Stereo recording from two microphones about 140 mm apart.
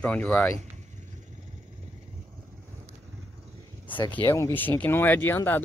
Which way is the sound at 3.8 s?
35° left (ahead or behind).